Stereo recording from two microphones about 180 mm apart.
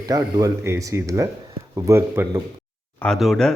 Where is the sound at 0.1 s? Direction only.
20° right (ahead or behind).